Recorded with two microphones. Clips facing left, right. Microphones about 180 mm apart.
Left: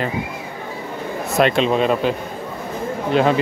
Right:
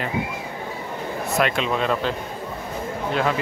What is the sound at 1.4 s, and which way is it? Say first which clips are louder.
Speech: left 7 dB; 25° left (ahead or behind).